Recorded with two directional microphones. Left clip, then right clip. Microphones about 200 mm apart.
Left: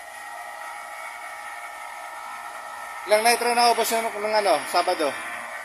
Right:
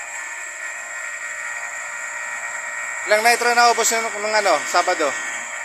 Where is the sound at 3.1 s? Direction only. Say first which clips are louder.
Right 4 dB; 10° left (ahead or behind).